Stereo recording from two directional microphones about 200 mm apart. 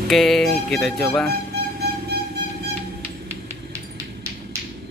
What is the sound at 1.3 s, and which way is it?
Vehicle, 50° right (ahead or behind).